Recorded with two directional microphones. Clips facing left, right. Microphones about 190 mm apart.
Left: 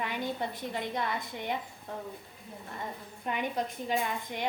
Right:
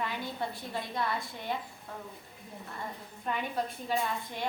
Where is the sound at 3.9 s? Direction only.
15° left (ahead or behind).